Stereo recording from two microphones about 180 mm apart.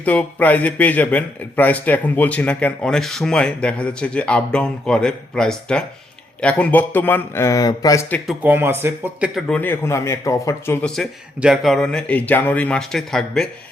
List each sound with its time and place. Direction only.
0.0 s a man's voice: 10° left (ahead or behind)
8.3 s speech: 10° right (ahead or behind)
9.3 s a man's voice: 5° left (ahead or behind)
10.8 s speech: centre (ahead or behind)